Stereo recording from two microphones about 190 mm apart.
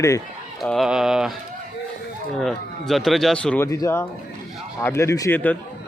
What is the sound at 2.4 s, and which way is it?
A man's voice, centre (ahead or behind).